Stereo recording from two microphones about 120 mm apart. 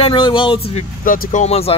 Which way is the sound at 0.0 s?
40° left (ahead or behind).